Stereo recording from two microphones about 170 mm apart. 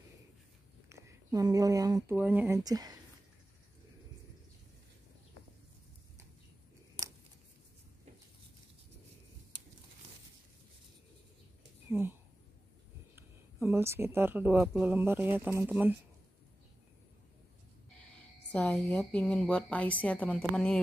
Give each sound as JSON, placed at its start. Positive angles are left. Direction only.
{"t": 0.8, "sound": "speech", "side_deg": -20}
{"t": 2.1, "sound": "speech", "side_deg": -10}
{"t": 11.9, "sound": "a sound", "side_deg": -15}
{"t": 13.1, "sound": "speech", "side_deg": -15}
{"t": 18.5, "sound": "a woman's voice", "side_deg": 10}